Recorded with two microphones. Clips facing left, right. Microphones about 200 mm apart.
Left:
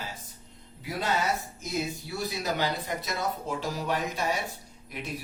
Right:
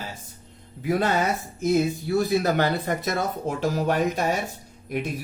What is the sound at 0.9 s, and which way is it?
Speech, 50° right (ahead or behind).